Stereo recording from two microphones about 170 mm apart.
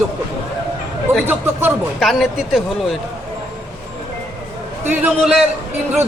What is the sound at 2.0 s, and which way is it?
Speech, centre (ahead or behind).